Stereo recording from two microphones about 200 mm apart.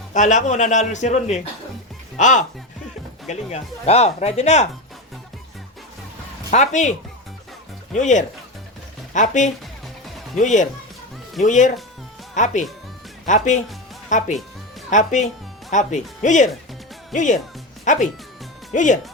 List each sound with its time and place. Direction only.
0.1 s speech: 40° left (ahead or behind)
6.5 s speech: 35° left (ahead or behind)
7.9 s speech: 40° left (ahead or behind)